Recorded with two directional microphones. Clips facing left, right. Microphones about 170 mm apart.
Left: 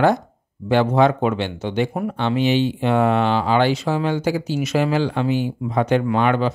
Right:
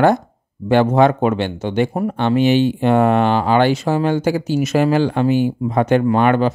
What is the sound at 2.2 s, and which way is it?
Speech, 50° right (ahead or behind).